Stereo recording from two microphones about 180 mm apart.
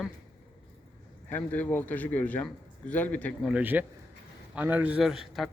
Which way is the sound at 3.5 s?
10° right (ahead or behind).